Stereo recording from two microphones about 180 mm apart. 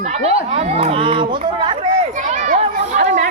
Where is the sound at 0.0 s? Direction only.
35° right (ahead or behind).